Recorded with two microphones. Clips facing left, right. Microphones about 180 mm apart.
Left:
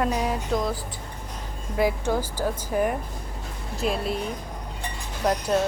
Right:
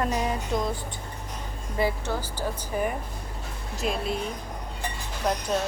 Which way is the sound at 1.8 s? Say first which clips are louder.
Left 4 dB; 10° left (ahead or behind).